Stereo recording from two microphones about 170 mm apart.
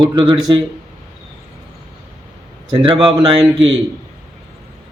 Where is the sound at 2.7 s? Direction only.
30° right (ahead or behind).